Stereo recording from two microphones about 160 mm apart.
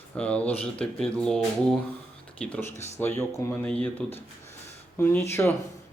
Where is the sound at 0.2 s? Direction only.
10° left (ahead or behind).